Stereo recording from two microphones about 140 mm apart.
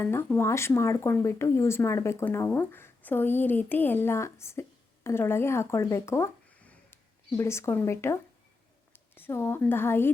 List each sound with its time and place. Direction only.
0.0 s speech: 15° left (ahead or behind)
6.6 s a sound: 10° left (ahead or behind)
7.3 s a woman's voice: 20° left (ahead or behind)